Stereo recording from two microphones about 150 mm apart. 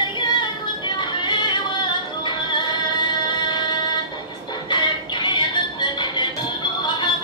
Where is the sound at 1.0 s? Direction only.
30° left (ahead or behind).